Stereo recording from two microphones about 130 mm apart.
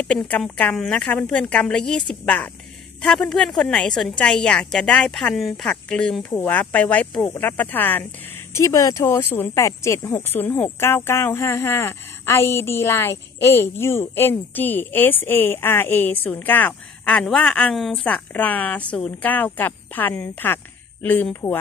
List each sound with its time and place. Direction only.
0.0 s a woman's voice: 10° left (ahead or behind)
8.5 s speech: 25° left (ahead or behind)